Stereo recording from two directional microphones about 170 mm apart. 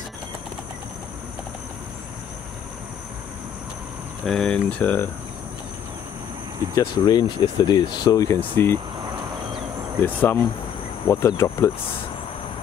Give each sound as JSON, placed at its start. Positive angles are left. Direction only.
{"t": 4.3, "sound": "speech", "side_deg": 5}
{"t": 6.8, "sound": "speech", "side_deg": 25}
{"t": 10.0, "sound": "speech", "side_deg": 15}